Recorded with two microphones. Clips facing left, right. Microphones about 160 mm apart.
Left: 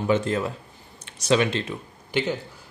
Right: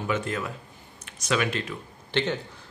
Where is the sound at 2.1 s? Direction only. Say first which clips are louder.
Left 1 dB; 10° left (ahead or behind).